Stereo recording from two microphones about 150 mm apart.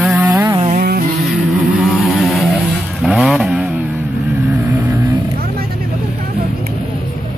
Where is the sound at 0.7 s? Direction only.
85° right.